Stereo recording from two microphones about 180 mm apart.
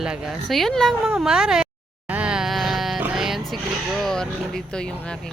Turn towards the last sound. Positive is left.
turn(degrees=5)  # may be behind; listen again after turning